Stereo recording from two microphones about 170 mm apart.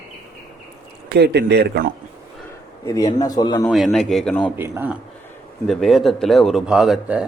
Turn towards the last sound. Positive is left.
turn(degrees=-5)  # may be behind; listen again after turning